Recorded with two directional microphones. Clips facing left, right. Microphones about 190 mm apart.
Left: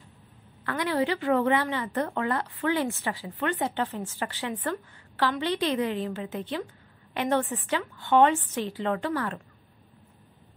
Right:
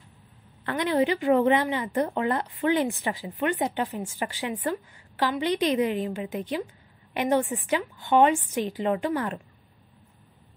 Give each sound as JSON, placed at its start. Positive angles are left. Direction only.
{"t": 0.7, "sound": "a woman's voice", "side_deg": -20}